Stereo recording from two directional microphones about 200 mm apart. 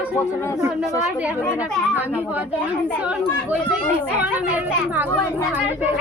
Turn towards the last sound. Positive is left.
turn(degrees=-10)  # may be behind; listen again after turning